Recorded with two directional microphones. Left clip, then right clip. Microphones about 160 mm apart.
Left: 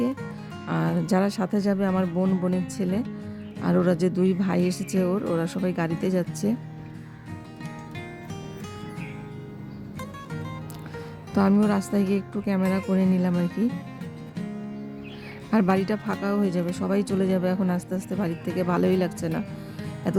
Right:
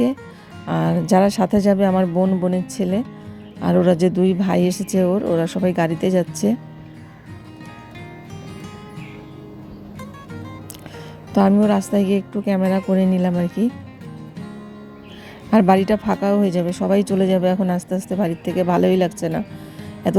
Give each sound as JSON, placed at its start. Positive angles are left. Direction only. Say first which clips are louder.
{"t": 0.7, "sound": "speech", "louder": "right 8 dB", "side_deg": -10}
{"t": 2.0, "sound": "music", "louder": "right 7 dB", "side_deg": 0}
{"t": 2.7, "sound": "speech", "louder": "right 6 dB", "side_deg": -10}
{"t": 5.6, "sound": "speech", "louder": "right 8 dB", "side_deg": -15}
{"t": 11.5, "sound": "speech", "louder": "right 7 dB", "side_deg": -5}
{"t": 13.0, "sound": "speech", "louder": "right 6 dB", "side_deg": -15}
{"t": 15.4, "sound": "speech", "louder": "right 9 dB", "side_deg": -20}